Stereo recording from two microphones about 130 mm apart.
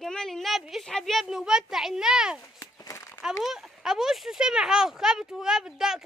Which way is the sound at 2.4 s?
25° left (ahead or behind).